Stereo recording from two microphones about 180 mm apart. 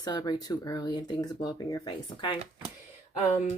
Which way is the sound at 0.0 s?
20° left (ahead or behind).